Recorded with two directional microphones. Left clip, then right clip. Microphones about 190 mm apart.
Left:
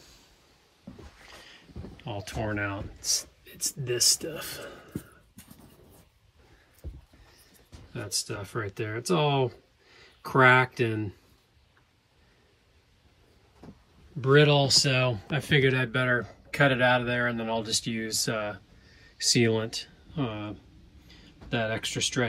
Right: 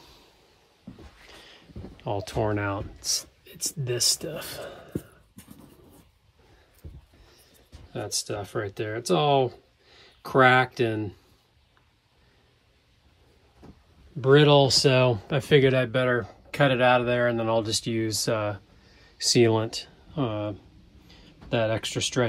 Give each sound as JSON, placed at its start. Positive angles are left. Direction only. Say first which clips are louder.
{"t": 1.4, "sound": "a sound", "louder": "right 1 dB", "side_deg": -30}
{"t": 3.0, "sound": "speech", "louder": "even", "side_deg": -25}
{"t": 7.9, "sound": "speech", "louder": "right 3 dB", "side_deg": -15}
{"t": 14.2, "sound": "speech", "louder": "right 3 dB", "side_deg": -15}